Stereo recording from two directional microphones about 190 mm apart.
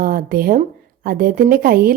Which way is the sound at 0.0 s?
50° right (ahead or behind).